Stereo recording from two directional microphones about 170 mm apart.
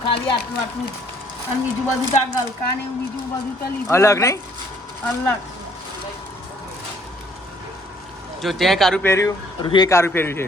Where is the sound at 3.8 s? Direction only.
15° left (ahead or behind).